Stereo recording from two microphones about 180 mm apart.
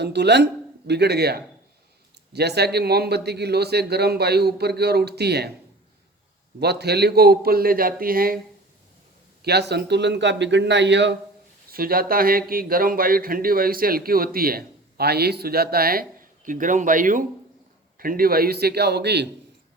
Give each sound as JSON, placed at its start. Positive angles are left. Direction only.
{"t": 0.0, "sound": "a man's voice", "side_deg": -70}
{"t": 6.6, "sound": "a man's voice", "side_deg": -65}
{"t": 9.4, "sound": "a man's voice", "side_deg": -65}
{"t": 11.7, "sound": "a man's voice", "side_deg": -55}